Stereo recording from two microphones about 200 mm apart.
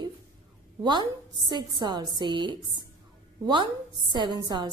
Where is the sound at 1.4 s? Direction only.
20° right (ahead or behind).